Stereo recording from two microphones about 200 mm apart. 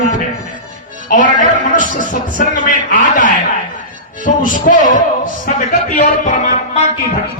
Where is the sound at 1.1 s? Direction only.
40° left (ahead or behind).